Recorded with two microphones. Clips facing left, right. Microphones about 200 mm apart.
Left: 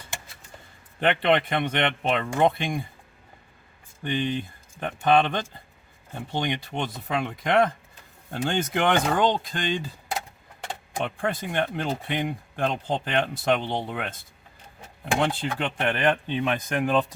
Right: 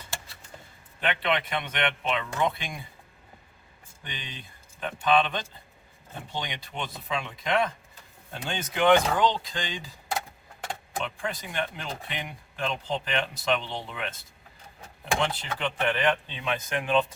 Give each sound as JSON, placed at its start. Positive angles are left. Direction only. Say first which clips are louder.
{"t": 1.0, "sound": "speech", "louder": "left 6 dB", "side_deg": 55}
{"t": 4.0, "sound": "speech", "louder": "left 16 dB", "side_deg": 55}
{"t": 11.0, "sound": "speech", "louder": "left 7 dB", "side_deg": 55}
{"t": 15.5, "sound": "speech", "louder": "left 1 dB", "side_deg": 50}